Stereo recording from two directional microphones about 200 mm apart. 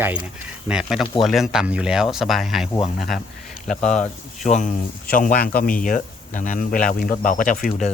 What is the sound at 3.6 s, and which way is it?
Speech, 35° left (ahead or behind).